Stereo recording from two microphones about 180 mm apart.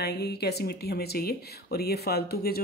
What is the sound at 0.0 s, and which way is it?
Speech, 65° left (ahead or behind).